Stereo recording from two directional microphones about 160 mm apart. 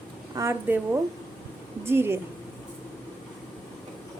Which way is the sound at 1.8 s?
15° right (ahead or behind).